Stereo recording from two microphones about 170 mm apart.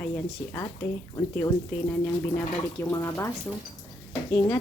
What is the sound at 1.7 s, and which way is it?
Speech, 5° left (ahead or behind).